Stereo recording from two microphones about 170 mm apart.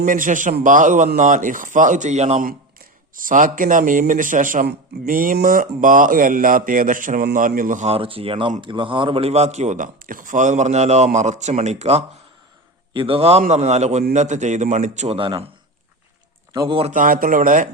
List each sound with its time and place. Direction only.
0.0 s speech: 50° right (ahead or behind)
3.2 s speech: 50° right (ahead or behind); by 15.3 s 35° right (ahead or behind)
16.5 s a man's voice: 20° right (ahead or behind)
16.9 s speech: 55° right (ahead or behind)